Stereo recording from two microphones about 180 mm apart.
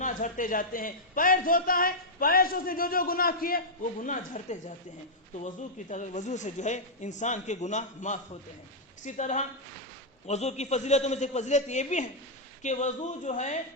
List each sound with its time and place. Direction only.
0.0 s a man's voice: 45° left (ahead or behind)
4.0 s a man's voice: 45° left (ahead or behind)